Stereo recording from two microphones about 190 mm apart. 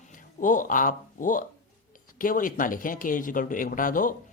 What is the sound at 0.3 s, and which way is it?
Speech, 45° left (ahead or behind).